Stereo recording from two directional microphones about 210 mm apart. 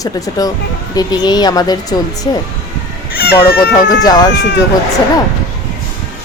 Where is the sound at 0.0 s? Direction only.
15° left (ahead or behind).